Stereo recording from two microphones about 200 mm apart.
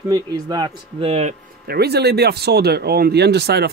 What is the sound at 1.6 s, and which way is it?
Speech, 50° right (ahead or behind).